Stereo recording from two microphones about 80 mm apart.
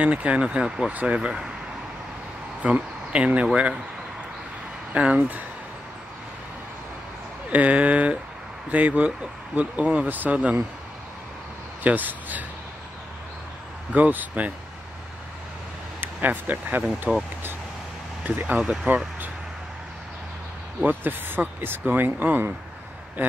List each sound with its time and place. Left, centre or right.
0.0 s speech: centre
2.6 s speech: centre
4.9 s speech: centre
7.4 s speech: centre
11.8 s speech: right
13.9 s speech: centre
16.0 s speech: right
17.1 s speech: centre
18.2 s speech: right
20.8 s speech: right